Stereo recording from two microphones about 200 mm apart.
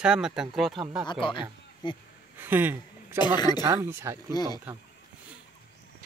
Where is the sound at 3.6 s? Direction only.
15° right (ahead or behind).